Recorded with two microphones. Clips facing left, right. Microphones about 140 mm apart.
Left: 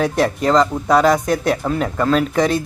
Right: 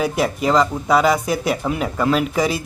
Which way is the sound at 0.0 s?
5° right (ahead or behind).